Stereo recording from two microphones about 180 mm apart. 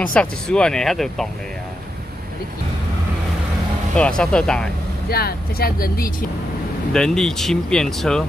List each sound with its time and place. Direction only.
0.0 s speech: 5° left (ahead or behind)
4.2 s speech: 5° left (ahead or behind)
5.1 s speech: 60° left (ahead or behind)
6.9 s speech: 5° left (ahead or behind)